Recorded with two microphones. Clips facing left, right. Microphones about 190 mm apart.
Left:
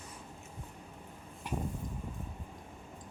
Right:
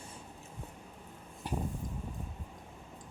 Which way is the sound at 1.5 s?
35° right (ahead or behind).